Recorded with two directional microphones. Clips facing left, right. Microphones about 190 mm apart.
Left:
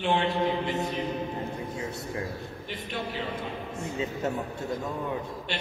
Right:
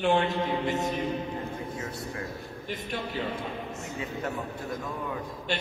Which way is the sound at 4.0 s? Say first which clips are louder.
Left 3 dB; 25° left (ahead or behind).